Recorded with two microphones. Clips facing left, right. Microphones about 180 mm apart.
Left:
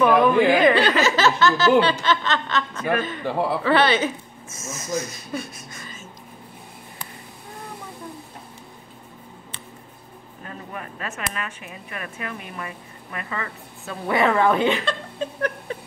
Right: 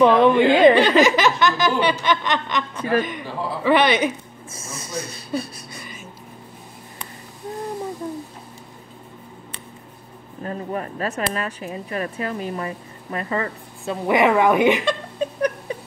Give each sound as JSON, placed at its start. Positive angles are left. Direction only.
{"t": 0.0, "sound": "speech", "side_deg": -25}
{"t": 0.7, "sound": "a sound", "side_deg": -15}
{"t": 4.5, "sound": "speech", "side_deg": -30}
{"t": 10.4, "sound": "a woman's voice", "side_deg": -35}
{"t": 14.0, "sound": "speech", "side_deg": -15}